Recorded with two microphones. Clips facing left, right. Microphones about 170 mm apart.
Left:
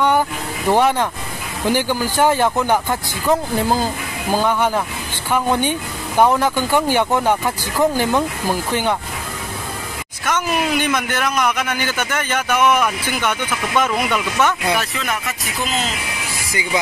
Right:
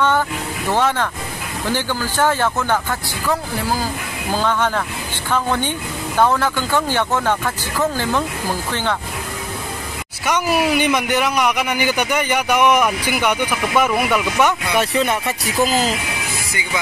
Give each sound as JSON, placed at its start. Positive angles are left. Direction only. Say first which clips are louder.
{"t": 0.7, "sound": "speech", "louder": "left 3 dB", "side_deg": 15}
{"t": 10.2, "sound": "a man's voice", "louder": "right 2 dB", "side_deg": -10}
{"t": 14.8, "sound": "speech", "louder": "right 6 dB", "side_deg": -30}